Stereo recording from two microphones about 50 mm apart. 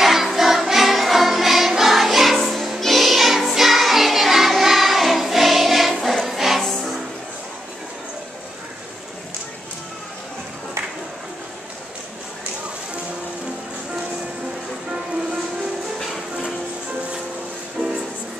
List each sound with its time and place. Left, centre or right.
0.0 s music: centre
17.7 s music: centre